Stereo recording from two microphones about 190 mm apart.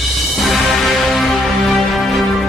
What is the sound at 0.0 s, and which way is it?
Music, centre (ahead or behind).